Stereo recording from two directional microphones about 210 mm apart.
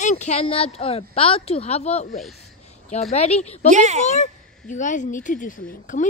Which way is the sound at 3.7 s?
35° right (ahead or behind).